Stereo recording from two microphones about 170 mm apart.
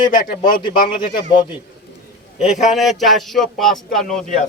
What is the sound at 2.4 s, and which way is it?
Speech, centre (ahead or behind).